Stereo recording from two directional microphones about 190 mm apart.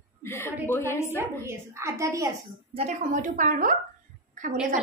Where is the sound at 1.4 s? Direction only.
15° right (ahead or behind).